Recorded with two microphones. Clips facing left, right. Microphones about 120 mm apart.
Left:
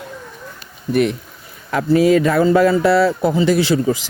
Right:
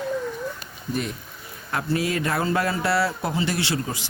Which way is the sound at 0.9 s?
70° left (ahead or behind).